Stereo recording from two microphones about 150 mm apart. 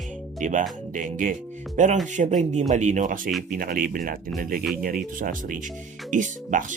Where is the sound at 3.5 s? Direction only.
75° right (ahead or behind).